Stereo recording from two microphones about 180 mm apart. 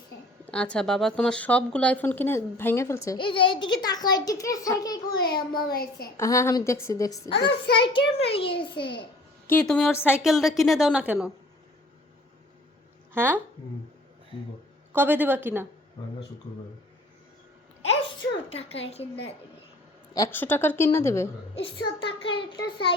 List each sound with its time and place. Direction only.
0.4 s speech: 5° left (ahead or behind)
3.2 s a child's voice: 30° left (ahead or behind)
5.6 s a woman's voice: 60° left (ahead or behind)
6.1 s a child's voice: 15° left (ahead or behind)
9.5 s a woman's voice: 5° left (ahead or behind)
13.1 s a woman's voice: 10° right (ahead or behind)
14.9 s a woman's voice: 10° right (ahead or behind)
18.4 s a woman's voice: 35° left (ahead or behind)
20.1 s speech: 15° left (ahead or behind)
21.5 s a child's voice: 30° left (ahead or behind)